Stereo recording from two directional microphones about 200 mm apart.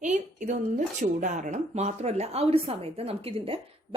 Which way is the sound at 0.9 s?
40° right (ahead or behind).